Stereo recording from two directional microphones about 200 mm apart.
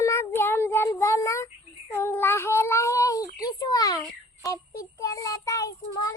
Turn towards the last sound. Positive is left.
turn(degrees=15)  # may be behind; listen again after turning